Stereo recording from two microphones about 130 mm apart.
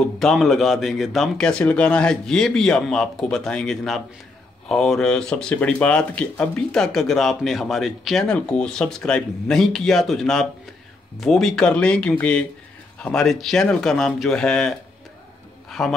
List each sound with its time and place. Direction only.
0.2 s speech: centre (ahead or behind)
15.8 s speech: centre (ahead or behind)